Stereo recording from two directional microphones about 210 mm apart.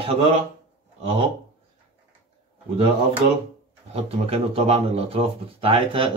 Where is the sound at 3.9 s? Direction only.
30° right (ahead or behind).